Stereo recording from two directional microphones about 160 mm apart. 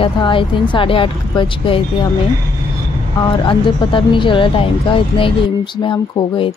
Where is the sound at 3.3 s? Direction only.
30° left (ahead or behind).